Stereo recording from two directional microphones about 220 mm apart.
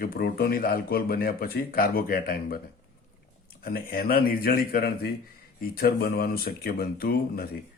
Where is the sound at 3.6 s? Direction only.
40° left (ahead or behind).